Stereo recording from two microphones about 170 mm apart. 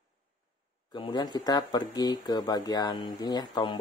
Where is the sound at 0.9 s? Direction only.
25° left (ahead or behind).